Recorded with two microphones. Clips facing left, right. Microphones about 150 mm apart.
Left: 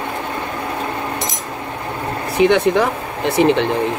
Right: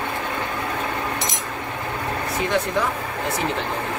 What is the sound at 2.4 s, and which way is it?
Speech, 75° left (ahead or behind).